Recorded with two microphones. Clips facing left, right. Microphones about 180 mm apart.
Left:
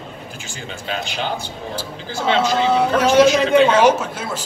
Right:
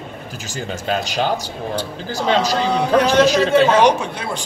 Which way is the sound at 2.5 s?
5° left (ahead or behind).